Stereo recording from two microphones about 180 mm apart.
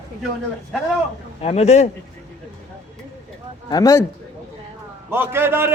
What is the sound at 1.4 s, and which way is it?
Speech, 35° left (ahead or behind).